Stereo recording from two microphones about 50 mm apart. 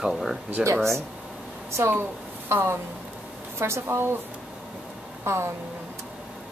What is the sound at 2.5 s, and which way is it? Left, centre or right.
A woman's voice, right.